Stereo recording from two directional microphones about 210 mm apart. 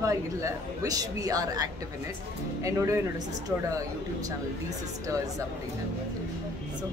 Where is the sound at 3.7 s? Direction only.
15° right (ahead or behind).